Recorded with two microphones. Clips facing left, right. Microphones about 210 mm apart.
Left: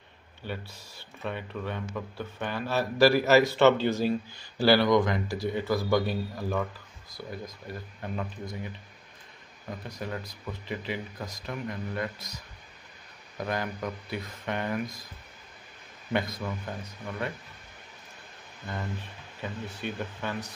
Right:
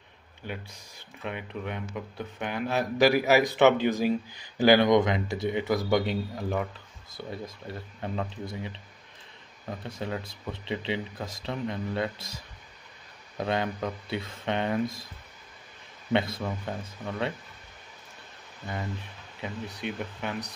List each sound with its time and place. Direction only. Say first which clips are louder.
0.5 s speech: left 1 dB; 15° right (ahead or behind)
9.8 s speech: right 3 dB; 25° right (ahead or behind)
13.4 s speech: right 3 dB; 25° right (ahead or behind)
16.1 s speech: right 3 dB; 25° right (ahead or behind)
19.4 s speech: right 1 dB; 15° right (ahead or behind)